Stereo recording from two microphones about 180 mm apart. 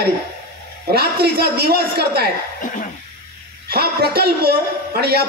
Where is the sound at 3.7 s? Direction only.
60° right (ahead or behind).